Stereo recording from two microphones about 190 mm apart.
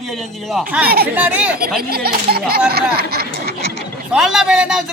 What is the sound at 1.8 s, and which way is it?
Speech, 55° right (ahead or behind).